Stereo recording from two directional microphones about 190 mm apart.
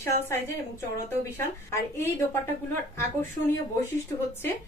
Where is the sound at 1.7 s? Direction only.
15° left (ahead or behind).